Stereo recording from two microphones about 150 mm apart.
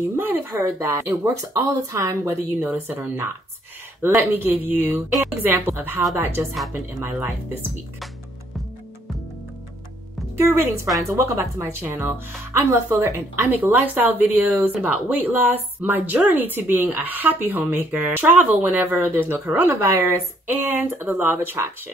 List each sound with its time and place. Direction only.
0.1 s speech: 15° right (ahead or behind)
10.3 s speech: 15° right (ahead or behind)